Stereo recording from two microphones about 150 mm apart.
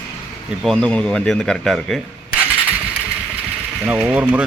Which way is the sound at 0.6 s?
5° left (ahead or behind).